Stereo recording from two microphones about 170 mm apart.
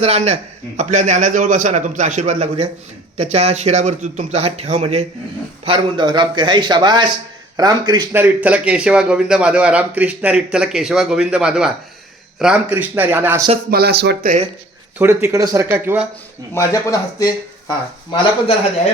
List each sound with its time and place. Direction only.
0.0 s a man's voice: 40° right (ahead or behind)
5.6 s a man's voice: 30° right (ahead or behind)
8.1 s a man's voice: 10° right (ahead or behind)
13.7 s speech: 70° right (ahead or behind)
14.9 s speech: 15° right (ahead or behind)
16.6 s speech: 20° left (ahead or behind)